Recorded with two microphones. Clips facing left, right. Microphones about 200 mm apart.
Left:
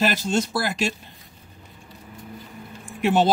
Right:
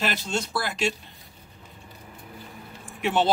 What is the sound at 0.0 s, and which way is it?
Speech, 45° left (ahead or behind).